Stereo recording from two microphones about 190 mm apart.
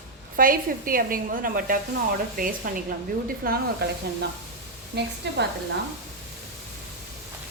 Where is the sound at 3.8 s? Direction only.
60° right (ahead or behind).